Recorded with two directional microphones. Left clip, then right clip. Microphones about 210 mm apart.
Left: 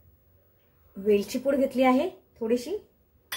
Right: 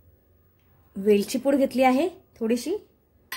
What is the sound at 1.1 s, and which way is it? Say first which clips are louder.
A woman's voice: right 3 dB; 50° right (ahead or behind).